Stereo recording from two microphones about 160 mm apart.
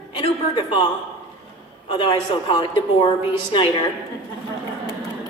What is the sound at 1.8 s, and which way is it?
Speech, 30° left (ahead or behind).